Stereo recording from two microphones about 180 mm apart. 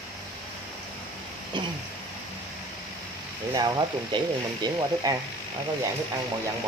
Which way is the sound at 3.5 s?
20° right (ahead or behind).